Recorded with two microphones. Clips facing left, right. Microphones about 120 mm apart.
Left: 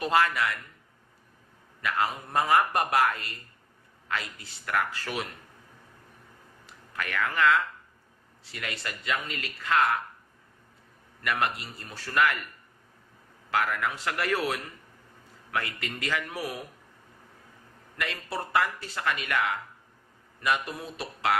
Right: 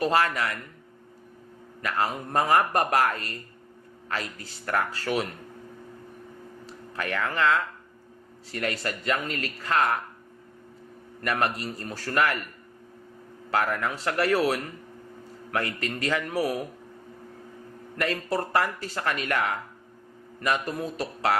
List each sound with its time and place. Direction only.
0.0 s speech: 35° right (ahead or behind)
1.8 s speech: 35° right (ahead or behind)
6.7 s speech: 30° right (ahead or behind)
11.2 s speech: 35° right (ahead or behind)
13.5 s speech: 35° right (ahead or behind)
17.9 s speech: 40° right (ahead or behind)